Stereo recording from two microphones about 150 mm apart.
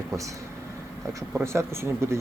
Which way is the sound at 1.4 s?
15° right (ahead or behind).